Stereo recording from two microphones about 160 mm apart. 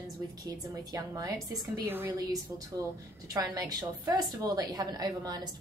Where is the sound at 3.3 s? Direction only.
20° right (ahead or behind).